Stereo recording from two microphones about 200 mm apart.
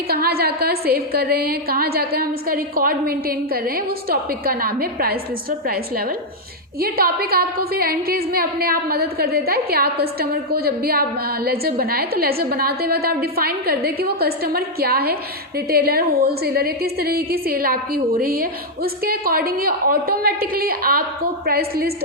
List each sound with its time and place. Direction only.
0.1 s a woman's voice: 50° right (ahead or behind)